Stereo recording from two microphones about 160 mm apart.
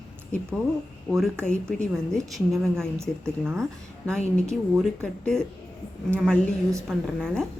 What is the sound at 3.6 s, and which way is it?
A woman's voice, 5° left (ahead or behind).